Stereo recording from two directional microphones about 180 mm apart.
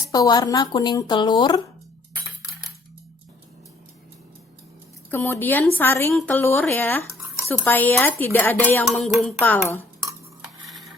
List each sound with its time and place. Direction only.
0.1 s speech: 20° left (ahead or behind)
5.1 s speech: 10° left (ahead or behind)
8.8 s music: centre (ahead or behind)
9.4 s speech: 10° left (ahead or behind)
10.4 s cutlery: centre (ahead or behind)